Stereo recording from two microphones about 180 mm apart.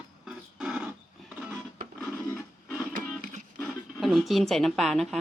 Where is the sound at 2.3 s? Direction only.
5° left (ahead or behind).